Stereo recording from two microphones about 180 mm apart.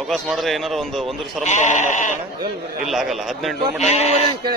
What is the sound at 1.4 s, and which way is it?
Speech, 40° left (ahead or behind).